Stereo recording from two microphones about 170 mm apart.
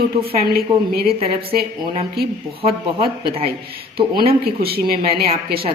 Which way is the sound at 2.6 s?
35° right (ahead or behind).